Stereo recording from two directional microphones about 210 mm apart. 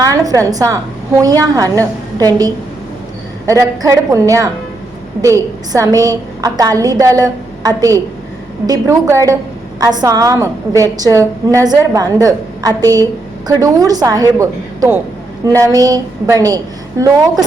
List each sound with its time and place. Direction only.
0.3 s a woman's voice: 15° right (ahead or behind)